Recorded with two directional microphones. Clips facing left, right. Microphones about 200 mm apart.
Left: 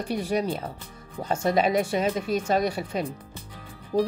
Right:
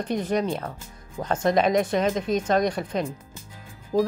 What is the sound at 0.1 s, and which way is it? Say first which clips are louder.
Speech: right 1 dB; 10° left (ahead or behind).